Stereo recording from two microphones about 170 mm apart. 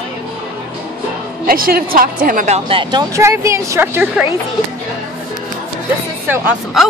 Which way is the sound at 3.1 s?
15° right (ahead or behind).